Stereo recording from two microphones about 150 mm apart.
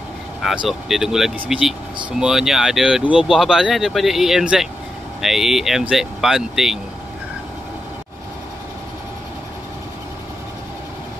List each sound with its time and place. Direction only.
0.4 s speech: centre (ahead or behind)